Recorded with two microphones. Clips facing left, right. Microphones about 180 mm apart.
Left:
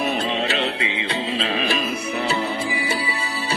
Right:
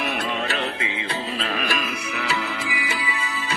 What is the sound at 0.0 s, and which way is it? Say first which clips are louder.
Music: left 4 dB; 25° left (ahead or behind).